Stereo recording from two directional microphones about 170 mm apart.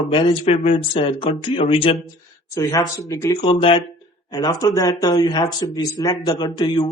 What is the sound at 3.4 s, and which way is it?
Speech, 30° left (ahead or behind).